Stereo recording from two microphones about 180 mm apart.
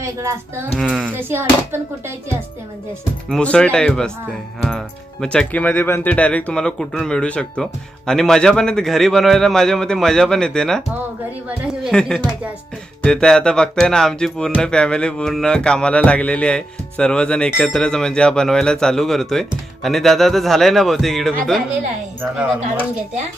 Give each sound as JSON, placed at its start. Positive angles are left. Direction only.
{"t": 0.0, "sound": "speech", "side_deg": -15}
{"t": 0.8, "sound": "speech", "side_deg": -5}
{"t": 3.2, "sound": "speech", "side_deg": 5}
{"t": 5.2, "sound": "speech", "side_deg": 5}